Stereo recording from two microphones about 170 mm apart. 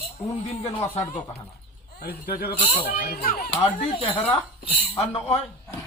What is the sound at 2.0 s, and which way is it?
Speech, 70° left (ahead or behind).